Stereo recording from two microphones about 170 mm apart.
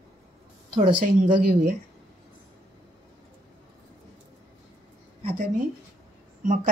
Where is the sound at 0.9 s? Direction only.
30° right (ahead or behind).